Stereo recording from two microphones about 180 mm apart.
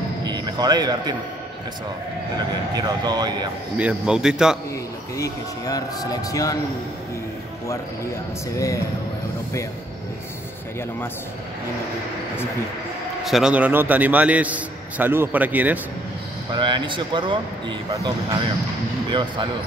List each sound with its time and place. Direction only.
0.2 s basketball bounce: 20° right (ahead or behind)
2.3 s speech: 20° right (ahead or behind)
3.7 s a man's voice: 5° right (ahead or behind)
5.1 s speech: 20° left (ahead or behind)
8.5 s speech: 20° left (ahead or behind)
13.2 s a man's voice: centre (ahead or behind)
16.5 s speech: 25° right (ahead or behind)